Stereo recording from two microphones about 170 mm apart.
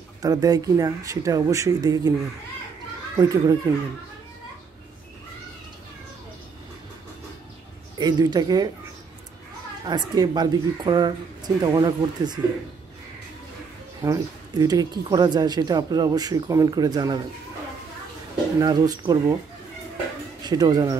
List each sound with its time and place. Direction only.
0.2 s speech: 20° right (ahead or behind)
3.2 s speech: 20° right (ahead or behind)
8.0 s speech: 25° right (ahead or behind)
9.8 s speech: 25° right (ahead or behind)
14.0 s speech: 20° right (ahead or behind)
18.6 s speech: 25° right (ahead or behind)
20.4 s speech: 25° right (ahead or behind)